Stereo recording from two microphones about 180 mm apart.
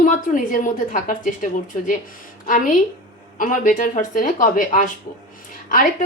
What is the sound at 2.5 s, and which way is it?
A woman's voice, 45° left (ahead or behind).